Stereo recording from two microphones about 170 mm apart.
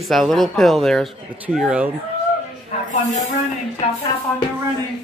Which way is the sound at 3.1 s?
45° left (ahead or behind).